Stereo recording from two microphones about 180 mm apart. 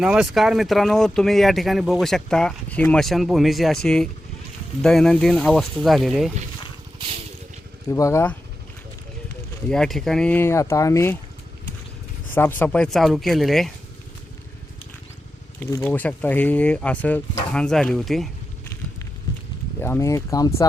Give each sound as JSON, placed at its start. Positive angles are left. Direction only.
{"t": 0.0, "sound": "speech", "side_deg": -5}
{"t": 7.9, "sound": "speech", "side_deg": 15}
{"t": 9.6, "sound": "speech", "side_deg": 5}
{"t": 12.3, "sound": "speech", "side_deg": 10}
{"t": 15.8, "sound": "speech", "side_deg": 10}
{"t": 19.8, "sound": "speech", "side_deg": 15}